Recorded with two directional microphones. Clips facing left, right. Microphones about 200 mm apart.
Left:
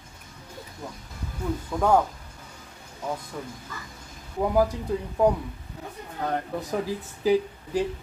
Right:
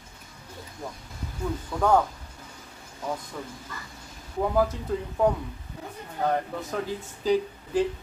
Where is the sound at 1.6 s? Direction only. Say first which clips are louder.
Left 1 dB; 10° left (ahead or behind).